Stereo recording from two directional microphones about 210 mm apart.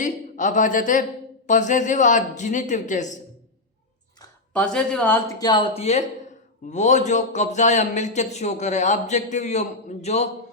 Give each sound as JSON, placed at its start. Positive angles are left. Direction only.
{"t": 0.0, "sound": "a man's voice", "side_deg": 35}
{"t": 4.5, "sound": "speech", "side_deg": 5}
{"t": 5.4, "sound": "speech", "side_deg": 20}